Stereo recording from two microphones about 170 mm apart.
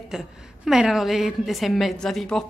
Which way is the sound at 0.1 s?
5° right (ahead or behind).